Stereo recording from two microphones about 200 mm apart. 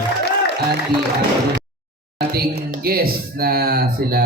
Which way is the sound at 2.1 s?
50° right (ahead or behind).